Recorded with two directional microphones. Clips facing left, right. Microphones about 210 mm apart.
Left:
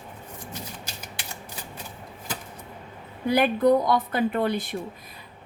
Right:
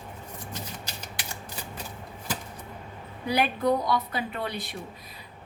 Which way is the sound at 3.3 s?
50° left (ahead or behind).